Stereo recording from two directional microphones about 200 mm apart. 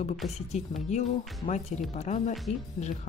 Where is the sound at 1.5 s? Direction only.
35° left (ahead or behind).